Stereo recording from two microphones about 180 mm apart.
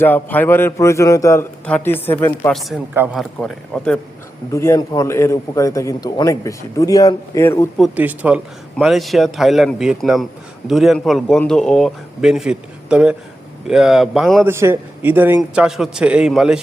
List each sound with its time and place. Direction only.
0.0 s a man's voice: 10° left (ahead or behind)
2.5 s a man's voice: centre (ahead or behind)
4.5 s a man's voice: 15° left (ahead or behind)
7.8 s a man's voice: 10° right (ahead or behind)
14.4 s a man's voice: 15° right (ahead or behind)